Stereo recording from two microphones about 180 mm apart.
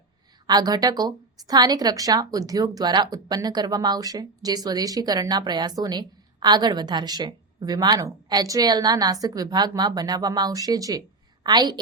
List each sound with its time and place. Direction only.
0.4 s a woman's voice: 20° right (ahead or behind)